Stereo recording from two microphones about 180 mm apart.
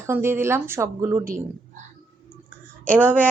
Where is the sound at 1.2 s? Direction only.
50° right (ahead or behind).